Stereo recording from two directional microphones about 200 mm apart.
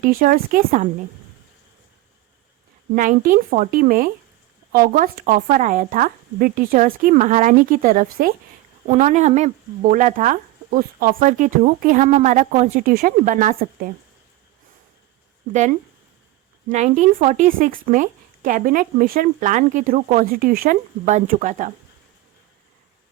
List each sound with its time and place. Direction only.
0.0 s speech: 45° right (ahead or behind)
2.9 s a woman's voice: 40° right (ahead or behind)
16.6 s a woman's voice: 35° right (ahead or behind)